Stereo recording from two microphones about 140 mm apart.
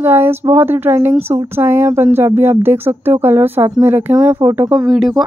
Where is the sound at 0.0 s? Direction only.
15° right (ahead or behind).